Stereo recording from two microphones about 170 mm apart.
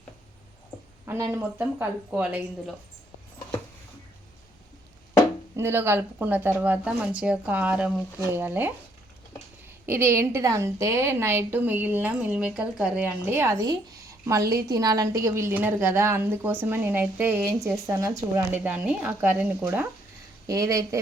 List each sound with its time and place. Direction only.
1.0 s a woman's voice: 15° right (ahead or behind)
5.5 s a woman's voice: 15° right (ahead or behind)
9.8 s a woman's voice: 15° right (ahead or behind)